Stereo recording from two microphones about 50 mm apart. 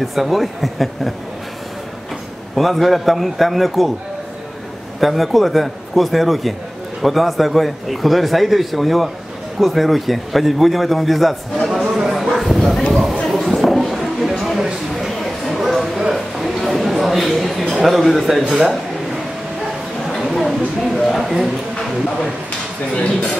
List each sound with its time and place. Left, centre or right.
0.0 s a man's voice: centre
2.5 s a man's voice: centre
5.0 s a man's voice: centre
12.0 s a sound: centre
12.3 s bow-wow: centre
13.4 s a sound: centre
18.5 s a man's voice: centre
20.1 s a sound: centre
21.1 s a man's voice: centre
22.9 s speech: left